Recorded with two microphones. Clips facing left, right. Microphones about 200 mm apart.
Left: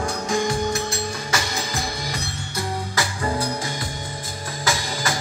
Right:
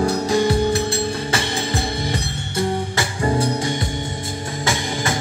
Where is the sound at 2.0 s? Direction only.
30° right (ahead or behind).